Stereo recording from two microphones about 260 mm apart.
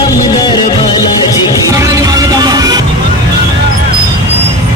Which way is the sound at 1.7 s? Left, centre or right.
Centre.